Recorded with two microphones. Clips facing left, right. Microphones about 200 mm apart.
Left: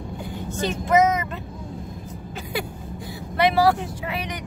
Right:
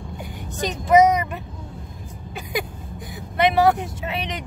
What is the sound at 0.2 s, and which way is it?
Vehicle, 15° right (ahead or behind).